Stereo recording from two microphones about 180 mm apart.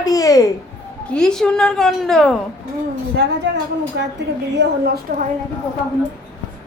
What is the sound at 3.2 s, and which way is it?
A woman's voice, 65° right (ahead or behind).